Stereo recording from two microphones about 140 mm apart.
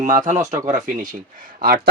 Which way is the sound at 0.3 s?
20° right (ahead or behind).